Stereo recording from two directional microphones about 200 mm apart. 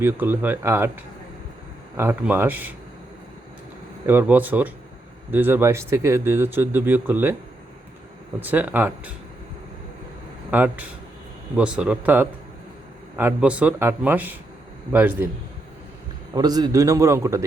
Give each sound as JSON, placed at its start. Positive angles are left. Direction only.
{"t": 0.0, "sound": "speech", "side_deg": -10}
{"t": 2.0, "sound": "speech", "side_deg": -10}
{"t": 4.0, "sound": "speech", "side_deg": -10}
{"t": 8.4, "sound": "speech", "side_deg": -10}
{"t": 10.5, "sound": "speech", "side_deg": -10}
{"t": 16.3, "sound": "speech", "side_deg": -20}